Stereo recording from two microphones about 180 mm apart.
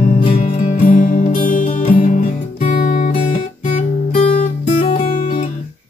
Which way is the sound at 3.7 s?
30° left (ahead or behind).